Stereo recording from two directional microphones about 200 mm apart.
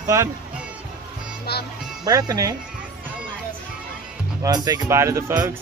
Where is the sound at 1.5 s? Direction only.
55° left (ahead or behind).